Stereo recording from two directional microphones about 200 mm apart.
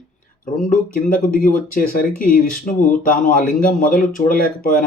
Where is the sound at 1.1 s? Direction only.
45° left (ahead or behind).